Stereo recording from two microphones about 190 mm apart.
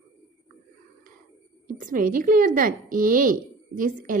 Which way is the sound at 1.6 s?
45° right (ahead or behind).